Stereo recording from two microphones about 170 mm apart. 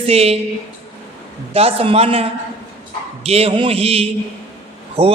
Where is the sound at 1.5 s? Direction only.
35° right (ahead or behind).